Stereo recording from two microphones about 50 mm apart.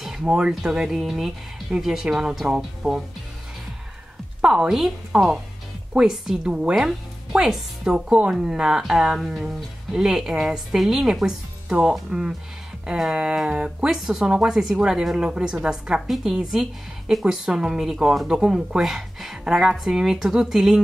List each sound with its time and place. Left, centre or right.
0.2 s speech: centre
0.6 s speech: centre
4.4 s speech: centre
8.1 s speech: centre
12.8 s a sound: centre
13.1 s speech: centre